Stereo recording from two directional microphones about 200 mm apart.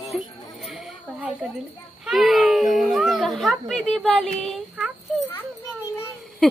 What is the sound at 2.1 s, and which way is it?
Speech, centre (ahead or behind).